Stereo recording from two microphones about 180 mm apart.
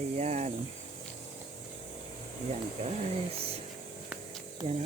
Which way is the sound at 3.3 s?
35° right (ahead or behind).